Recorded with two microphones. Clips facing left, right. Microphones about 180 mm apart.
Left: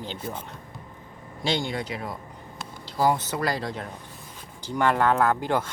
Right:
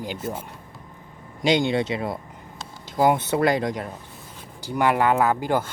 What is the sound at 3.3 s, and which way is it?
Speech, 20° right (ahead or behind).